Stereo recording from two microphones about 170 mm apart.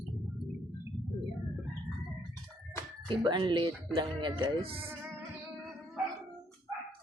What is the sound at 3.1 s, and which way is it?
Speech, 25° right (ahead or behind).